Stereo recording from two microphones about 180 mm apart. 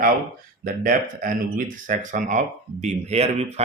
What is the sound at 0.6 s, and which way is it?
Speech, 45° right (ahead or behind).